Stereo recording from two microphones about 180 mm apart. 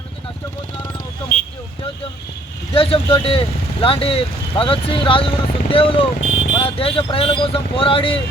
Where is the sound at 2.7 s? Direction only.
30° left (ahead or behind).